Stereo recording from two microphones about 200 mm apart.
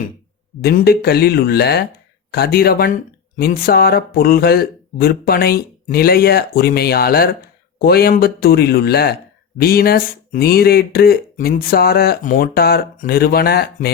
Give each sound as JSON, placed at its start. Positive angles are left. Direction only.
{"t": 0.6, "sound": "speech", "side_deg": 50}